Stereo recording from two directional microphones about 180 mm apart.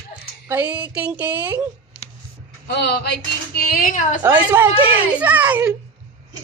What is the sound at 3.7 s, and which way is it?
Speech, 50° left (ahead or behind).